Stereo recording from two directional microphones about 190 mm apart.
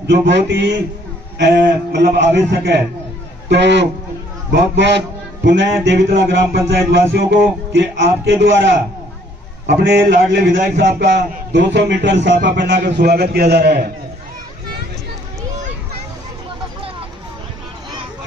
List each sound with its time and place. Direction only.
0.0 s a man's voice: 65° right (ahead or behind)
10.3 s a man's voice: 65° right (ahead or behind)